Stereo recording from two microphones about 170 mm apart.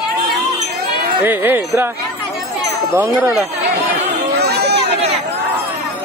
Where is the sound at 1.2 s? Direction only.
10° right (ahead or behind).